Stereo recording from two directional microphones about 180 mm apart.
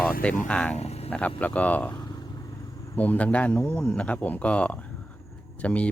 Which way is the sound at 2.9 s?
10° left (ahead or behind).